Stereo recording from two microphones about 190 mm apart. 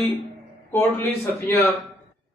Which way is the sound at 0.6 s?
10° left (ahead or behind).